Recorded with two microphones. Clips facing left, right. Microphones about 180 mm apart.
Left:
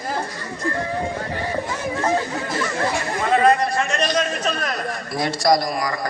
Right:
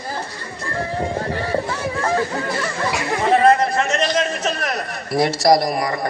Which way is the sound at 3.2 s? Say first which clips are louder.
Right 3 dB; 25° right (ahead or behind).